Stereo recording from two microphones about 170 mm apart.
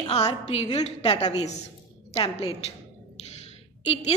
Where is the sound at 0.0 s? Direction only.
30° left (ahead or behind).